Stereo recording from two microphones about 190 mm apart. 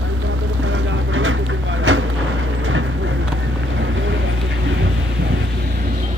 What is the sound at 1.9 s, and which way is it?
Vehicle, 90° right.